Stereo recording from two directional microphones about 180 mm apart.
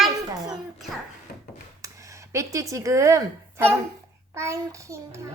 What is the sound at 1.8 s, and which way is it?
A woman's voice, 15° right (ahead or behind).